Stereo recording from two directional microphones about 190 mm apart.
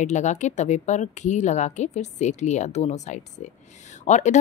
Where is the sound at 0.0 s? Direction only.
40° left (ahead or behind).